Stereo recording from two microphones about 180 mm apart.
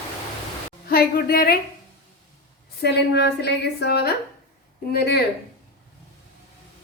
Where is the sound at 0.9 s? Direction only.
60° left (ahead or behind).